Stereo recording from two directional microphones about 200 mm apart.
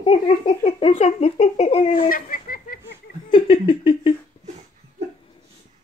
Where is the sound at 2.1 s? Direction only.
45° left (ahead or behind).